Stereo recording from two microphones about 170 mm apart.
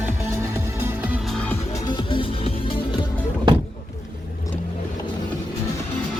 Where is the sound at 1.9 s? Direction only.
30° left (ahead or behind).